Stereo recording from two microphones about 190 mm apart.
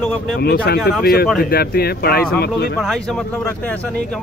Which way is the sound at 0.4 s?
60° left (ahead or behind).